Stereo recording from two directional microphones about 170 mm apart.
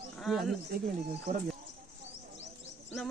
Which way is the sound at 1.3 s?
55° right (ahead or behind).